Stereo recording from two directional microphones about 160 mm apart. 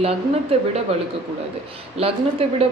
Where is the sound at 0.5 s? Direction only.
35° right (ahead or behind).